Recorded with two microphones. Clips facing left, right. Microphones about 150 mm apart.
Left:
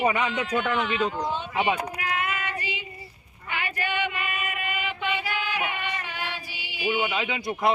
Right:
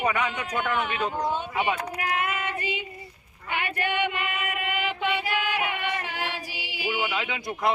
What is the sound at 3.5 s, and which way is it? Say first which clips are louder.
Female singing: right 2 dB; 60° right (ahead or behind).